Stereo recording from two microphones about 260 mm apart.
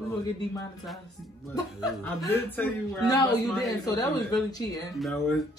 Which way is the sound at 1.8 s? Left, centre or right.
Centre.